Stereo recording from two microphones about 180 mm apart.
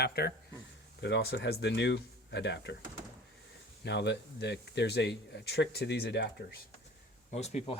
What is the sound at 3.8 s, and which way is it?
Speech, 75° left (ahead or behind).